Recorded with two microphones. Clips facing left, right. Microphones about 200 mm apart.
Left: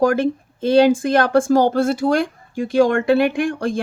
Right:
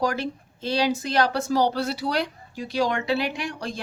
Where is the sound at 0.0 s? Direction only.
50° left (ahead or behind).